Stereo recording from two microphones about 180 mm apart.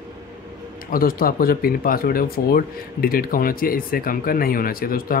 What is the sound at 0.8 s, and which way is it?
Speech, 55° left (ahead or behind).